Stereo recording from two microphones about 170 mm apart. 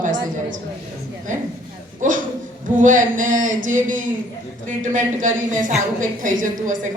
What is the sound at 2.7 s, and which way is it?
A woman's voice, 50° right (ahead or behind).